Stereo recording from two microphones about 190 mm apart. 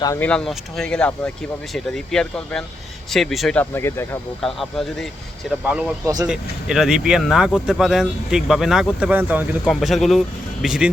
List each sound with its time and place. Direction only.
0.0 s speech: 15° left (ahead or behind)
0.3 s speech: 5° left (ahead or behind)
3.6 s speech: 15° left (ahead or behind)
4.4 s speech: centre (ahead or behind)